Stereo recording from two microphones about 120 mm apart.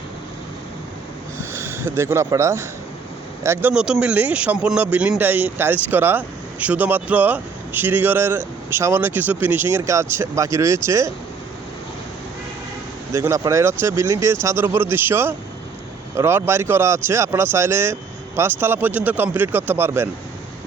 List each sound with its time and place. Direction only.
1.4 s speech: 20° right (ahead or behind)
13.1 s speech: 25° right (ahead or behind)